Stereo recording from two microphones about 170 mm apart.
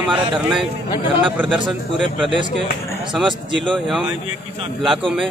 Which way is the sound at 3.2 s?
25° right (ahead or behind).